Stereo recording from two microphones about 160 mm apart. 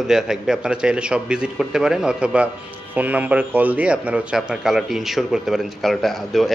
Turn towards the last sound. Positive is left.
turn(degrees=0)  # may be behind; listen again after turning